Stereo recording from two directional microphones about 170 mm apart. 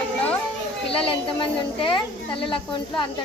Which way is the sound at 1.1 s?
30° left (ahead or behind).